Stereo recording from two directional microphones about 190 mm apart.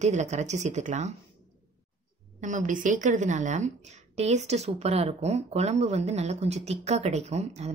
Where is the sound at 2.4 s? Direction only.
40° right (ahead or behind).